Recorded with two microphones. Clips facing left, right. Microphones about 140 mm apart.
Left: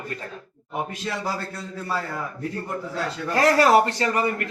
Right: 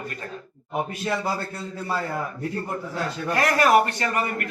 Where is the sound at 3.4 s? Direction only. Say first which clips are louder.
Left 2 dB; 30° left (ahead or behind).